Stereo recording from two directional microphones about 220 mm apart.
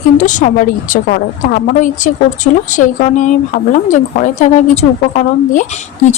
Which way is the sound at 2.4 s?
35° left (ahead or behind).